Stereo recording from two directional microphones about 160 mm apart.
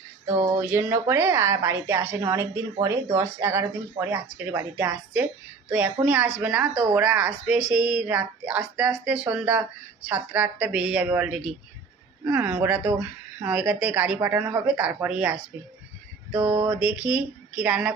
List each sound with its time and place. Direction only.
0.3 s a woman's voice: 20° right (ahead or behind)